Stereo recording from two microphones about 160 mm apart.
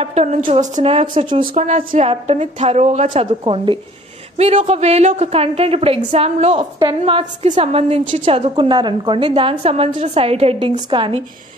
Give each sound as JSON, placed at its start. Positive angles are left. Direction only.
{"t": 0.0, "sound": "a woman's voice", "side_deg": -45}
{"t": 2.0, "sound": "a woman's voice", "side_deg": -40}